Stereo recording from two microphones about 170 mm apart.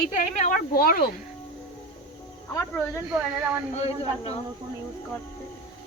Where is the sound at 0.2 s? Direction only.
50° left (ahead or behind).